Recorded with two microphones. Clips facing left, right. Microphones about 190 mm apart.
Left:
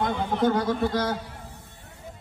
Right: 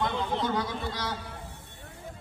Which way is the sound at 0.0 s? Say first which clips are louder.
Left 6 dB; 50° left (ahead or behind).